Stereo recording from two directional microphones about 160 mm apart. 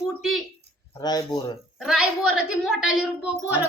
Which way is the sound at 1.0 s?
25° left (ahead or behind).